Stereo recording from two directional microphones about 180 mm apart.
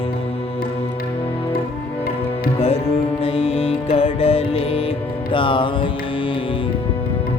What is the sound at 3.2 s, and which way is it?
Music, 30° left (ahead or behind).